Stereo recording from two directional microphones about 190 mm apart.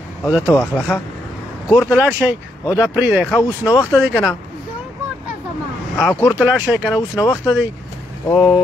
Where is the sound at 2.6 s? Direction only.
15° left (ahead or behind).